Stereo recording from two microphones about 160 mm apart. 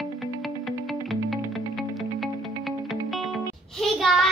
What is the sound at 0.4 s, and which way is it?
Music, centre (ahead or behind).